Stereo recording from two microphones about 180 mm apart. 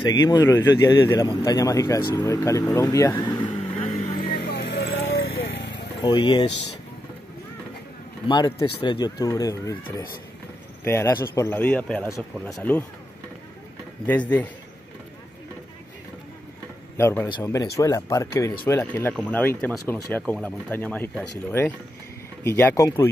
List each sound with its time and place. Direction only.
0.0 s speech: 20° left (ahead or behind)
4.2 s vehicle: 65° left (ahead or behind); by 5.9 s 85° left
6.0 s speech: 25° left (ahead or behind)
8.3 s speech: 25° left (ahead or behind)
10.8 s speech: 15° left (ahead or behind)
14.0 s speech: 10° left (ahead or behind)
16.9 s speech: 10° left (ahead or behind)